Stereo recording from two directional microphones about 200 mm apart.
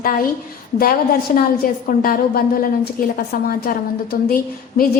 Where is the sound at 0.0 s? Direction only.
45° left (ahead or behind).